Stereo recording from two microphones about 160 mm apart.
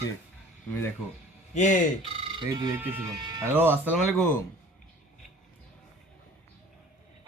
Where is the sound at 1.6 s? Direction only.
50° left (ahead or behind).